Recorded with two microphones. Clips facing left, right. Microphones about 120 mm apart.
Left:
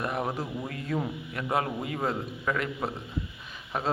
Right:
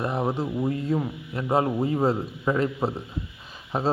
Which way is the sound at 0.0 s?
25° right (ahead or behind).